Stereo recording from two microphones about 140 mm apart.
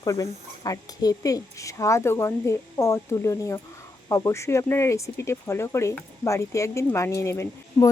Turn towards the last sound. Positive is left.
turn(degrees=20)  # may be behind; listen again after turning